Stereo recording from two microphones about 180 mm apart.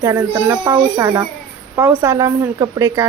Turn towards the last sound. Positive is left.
turn(degrees=-15)  # may be behind; listen again after turning